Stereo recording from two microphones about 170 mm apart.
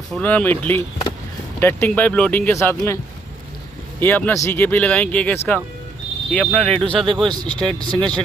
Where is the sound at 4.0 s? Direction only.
10° left (ahead or behind).